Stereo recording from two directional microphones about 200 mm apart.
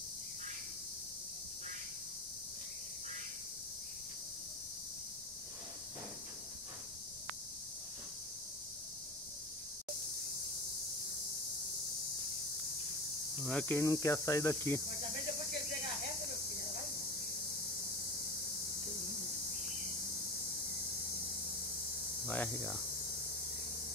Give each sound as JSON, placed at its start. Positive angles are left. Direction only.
{"t": 13.4, "sound": "cricket", "side_deg": 5}
{"t": 19.5, "sound": "cricket", "side_deg": -40}
{"t": 22.3, "sound": "cricket", "side_deg": 10}